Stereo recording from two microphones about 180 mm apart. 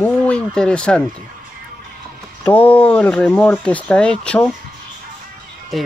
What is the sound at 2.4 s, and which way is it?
Speech, 10° left (ahead or behind).